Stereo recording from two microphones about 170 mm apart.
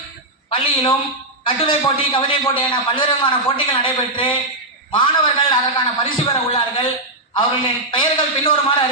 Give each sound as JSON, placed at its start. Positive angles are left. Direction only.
{"t": 0.5, "sound": "a man's voice", "side_deg": 30}